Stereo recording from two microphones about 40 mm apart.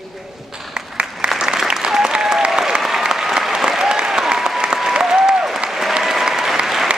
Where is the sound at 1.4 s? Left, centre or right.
Centre.